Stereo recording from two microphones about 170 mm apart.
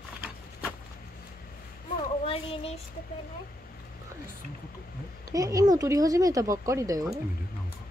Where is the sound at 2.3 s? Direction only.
35° left (ahead or behind).